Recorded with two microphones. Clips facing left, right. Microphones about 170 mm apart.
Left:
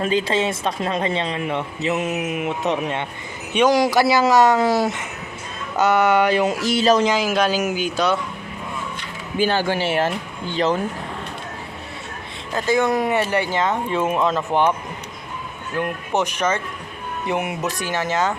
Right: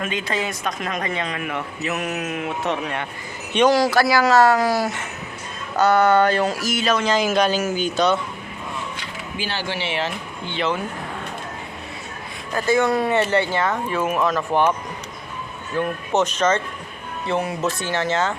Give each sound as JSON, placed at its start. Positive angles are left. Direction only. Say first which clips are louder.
{"t": 0.0, "sound": "speech", "louder": "left 5 dB", "side_deg": 30}
{"t": 7.2, "sound": "speech", "louder": "even", "side_deg": 5}
{"t": 9.4, "sound": "speech", "louder": "left 8 dB", "side_deg": 50}
{"t": 12.5, "sound": "speech", "louder": "even", "side_deg": 20}
{"t": 15.7, "sound": "speech", "louder": "right 1 dB", "side_deg": 15}